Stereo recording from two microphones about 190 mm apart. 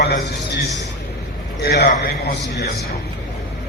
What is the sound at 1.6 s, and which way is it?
A man's voice, 55° left (ahead or behind).